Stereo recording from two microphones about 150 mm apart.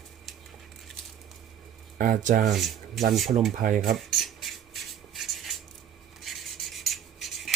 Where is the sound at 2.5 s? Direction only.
Centre (ahead or behind).